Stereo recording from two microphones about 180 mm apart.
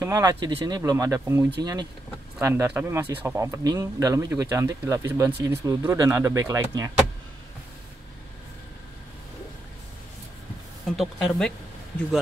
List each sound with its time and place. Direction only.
0.0 s speech: 20° right (ahead or behind)
2.4 s speech: 10° right (ahead or behind)
10.9 s speech: 5° left (ahead or behind)